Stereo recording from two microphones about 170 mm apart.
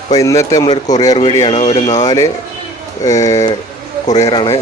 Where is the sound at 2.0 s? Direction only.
20° left (ahead or behind).